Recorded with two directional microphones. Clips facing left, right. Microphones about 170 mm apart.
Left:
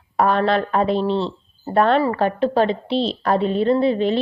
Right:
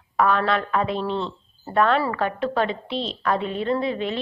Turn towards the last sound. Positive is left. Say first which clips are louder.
# left 7 dB
turn(degrees=35)  # may be behind; listen again after turning